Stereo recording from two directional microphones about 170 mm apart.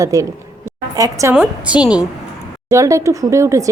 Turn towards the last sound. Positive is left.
turn(degrees=-20)  # may be behind; listen again after turning